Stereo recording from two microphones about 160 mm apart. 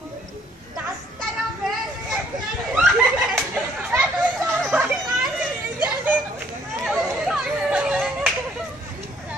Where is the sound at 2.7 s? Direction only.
Centre (ahead or behind).